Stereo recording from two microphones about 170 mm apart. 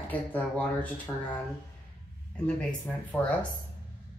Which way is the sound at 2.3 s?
5° left (ahead or behind).